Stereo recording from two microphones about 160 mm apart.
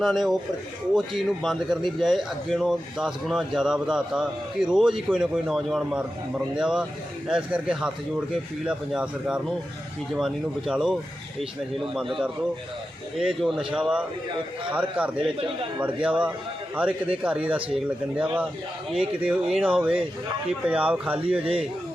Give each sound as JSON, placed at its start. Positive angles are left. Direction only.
{"t": 0.0, "sound": "a man's voice", "side_deg": 0}
{"t": 13.1, "sound": "a man's voice", "side_deg": 0}